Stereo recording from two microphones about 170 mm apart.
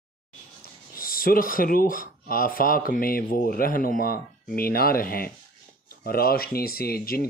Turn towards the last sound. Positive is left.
turn(degrees=60)  # may be behind; listen again after turning